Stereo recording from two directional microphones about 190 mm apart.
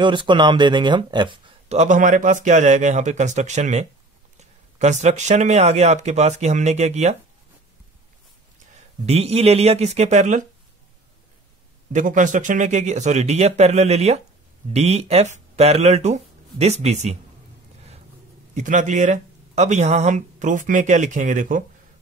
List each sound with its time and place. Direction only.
0.0 s speech: 25° right (ahead or behind)
9.0 s speech: 35° right (ahead or behind)
11.9 s speech: 40° right (ahead or behind)
18.5 s speech: 40° right (ahead or behind)